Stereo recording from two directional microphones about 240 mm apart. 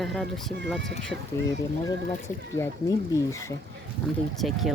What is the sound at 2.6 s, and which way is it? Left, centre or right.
Speech, centre.